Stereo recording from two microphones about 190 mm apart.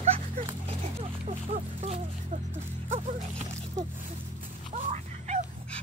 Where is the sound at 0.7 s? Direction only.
35° right (ahead or behind).